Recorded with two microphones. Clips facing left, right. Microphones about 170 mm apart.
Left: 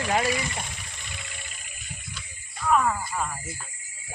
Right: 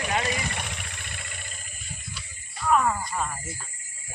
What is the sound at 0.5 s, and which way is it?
Vehicle, 70° right (ahead or behind).